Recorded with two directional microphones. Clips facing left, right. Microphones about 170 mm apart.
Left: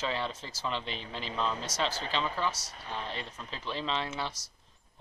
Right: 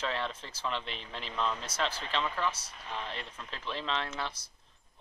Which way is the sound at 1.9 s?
40° left (ahead or behind).